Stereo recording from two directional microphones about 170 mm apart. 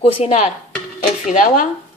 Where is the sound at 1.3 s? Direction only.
50° left (ahead or behind).